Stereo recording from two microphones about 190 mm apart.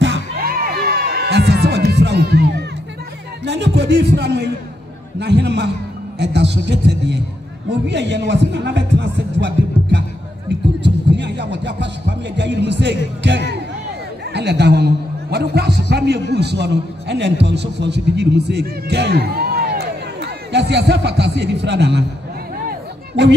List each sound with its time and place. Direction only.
0.0 s music: 60° right (ahead or behind)
3.4 s a man's voice: 65° right (ahead or behind)
22.7 s music: 65° right (ahead or behind)